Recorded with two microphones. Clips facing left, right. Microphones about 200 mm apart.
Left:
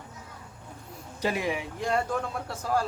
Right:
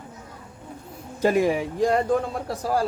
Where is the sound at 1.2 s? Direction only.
45° right (ahead or behind).